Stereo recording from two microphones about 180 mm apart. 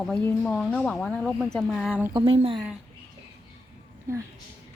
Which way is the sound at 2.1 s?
35° right (ahead or behind).